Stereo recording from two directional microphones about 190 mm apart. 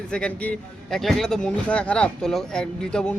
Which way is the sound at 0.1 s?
5° left (ahead or behind).